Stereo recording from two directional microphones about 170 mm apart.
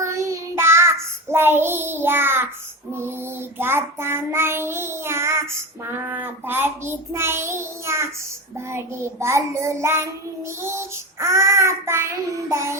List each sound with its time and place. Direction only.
0.0 s child singing: 15° right (ahead or behind)